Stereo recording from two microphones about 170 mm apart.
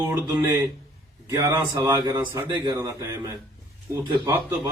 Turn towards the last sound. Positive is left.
turn(degrees=-15)  # may be behind; listen again after turning